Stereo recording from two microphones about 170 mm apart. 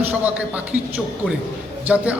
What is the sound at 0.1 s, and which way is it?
Speech, 10° right (ahead or behind).